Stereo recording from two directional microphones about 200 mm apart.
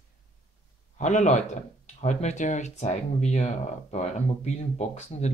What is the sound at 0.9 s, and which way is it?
Speech, 35° left (ahead or behind).